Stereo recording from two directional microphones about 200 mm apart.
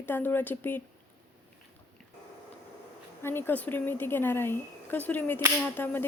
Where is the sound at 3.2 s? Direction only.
10° left (ahead or behind).